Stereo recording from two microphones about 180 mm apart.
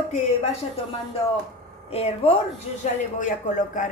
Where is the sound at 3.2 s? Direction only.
45° left (ahead or behind).